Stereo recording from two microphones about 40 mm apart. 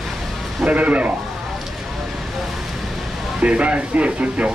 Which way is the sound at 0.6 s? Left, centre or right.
Right.